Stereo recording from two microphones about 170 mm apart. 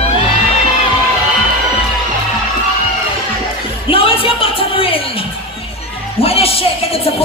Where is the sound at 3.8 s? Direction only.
35° left (ahead or behind).